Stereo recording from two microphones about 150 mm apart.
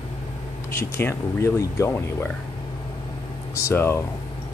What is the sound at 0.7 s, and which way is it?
Speech, 15° left (ahead or behind).